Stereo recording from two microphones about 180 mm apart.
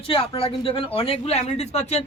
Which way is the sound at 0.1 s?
30° left (ahead or behind).